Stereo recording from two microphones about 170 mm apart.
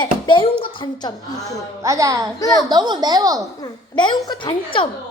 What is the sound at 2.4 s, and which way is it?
Speech, 20° left (ahead or behind).